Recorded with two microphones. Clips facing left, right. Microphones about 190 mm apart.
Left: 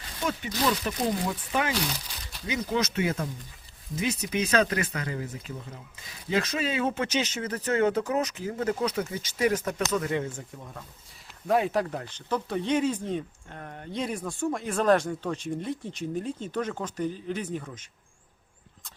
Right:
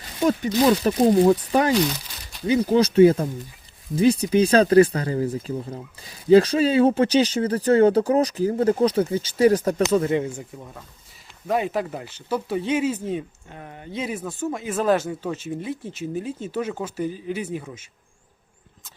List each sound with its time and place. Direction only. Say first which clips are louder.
0.2 s speech: right 10 dB; 40° right (ahead or behind)
10.2 s speech: right 6 dB; 10° right (ahead or behind)